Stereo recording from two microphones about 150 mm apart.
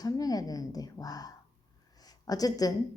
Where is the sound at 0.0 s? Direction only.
25° left (ahead or behind).